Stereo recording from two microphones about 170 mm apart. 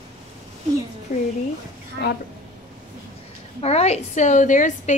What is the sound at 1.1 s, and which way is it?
Speech, 55° left (ahead or behind).